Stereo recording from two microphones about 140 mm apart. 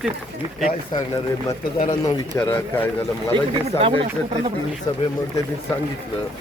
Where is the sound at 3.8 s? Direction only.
40° right (ahead or behind).